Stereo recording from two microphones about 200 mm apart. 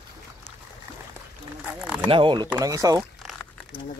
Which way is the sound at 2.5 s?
15° right (ahead or behind).